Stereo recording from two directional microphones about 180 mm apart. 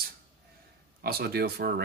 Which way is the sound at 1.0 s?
55° right (ahead or behind).